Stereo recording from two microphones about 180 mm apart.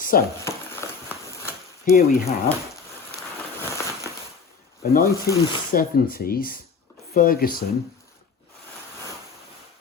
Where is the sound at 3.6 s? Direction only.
15° left (ahead or behind).